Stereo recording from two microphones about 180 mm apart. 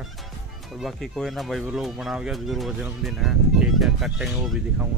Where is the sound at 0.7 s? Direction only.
Centre (ahead or behind).